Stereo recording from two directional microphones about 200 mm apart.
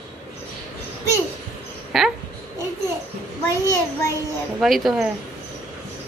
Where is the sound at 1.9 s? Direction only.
Centre (ahead or behind).